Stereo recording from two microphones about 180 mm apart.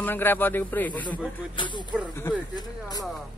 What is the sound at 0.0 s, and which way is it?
A man's voice, 10° left (ahead or behind).